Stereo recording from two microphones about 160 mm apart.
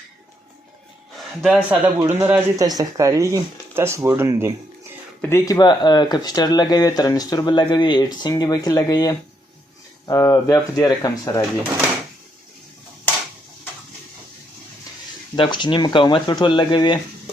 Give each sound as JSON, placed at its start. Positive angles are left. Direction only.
{"t": 1.4, "sound": "a man's voice", "side_deg": -5}
{"t": 2.0, "sound": "speech", "side_deg": -15}
{"t": 5.2, "sound": "speech", "side_deg": 20}
{"t": 15.4, "sound": "speech", "side_deg": 30}